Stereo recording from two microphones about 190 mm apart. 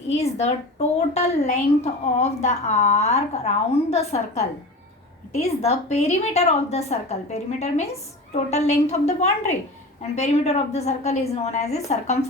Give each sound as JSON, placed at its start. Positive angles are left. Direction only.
{"t": 0.3, "sound": "a woman's voice", "side_deg": 35}